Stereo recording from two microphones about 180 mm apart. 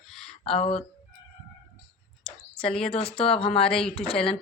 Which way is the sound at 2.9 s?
30° left (ahead or behind).